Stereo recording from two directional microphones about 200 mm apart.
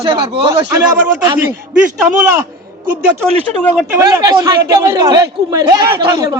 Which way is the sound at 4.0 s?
15° right (ahead or behind).